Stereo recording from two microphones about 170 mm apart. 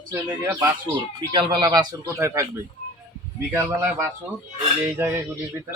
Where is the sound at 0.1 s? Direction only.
25° right (ahead or behind).